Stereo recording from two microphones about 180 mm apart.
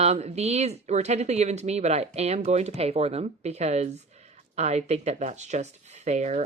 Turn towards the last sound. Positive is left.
turn(degrees=-40)  # may be behind; listen again after turning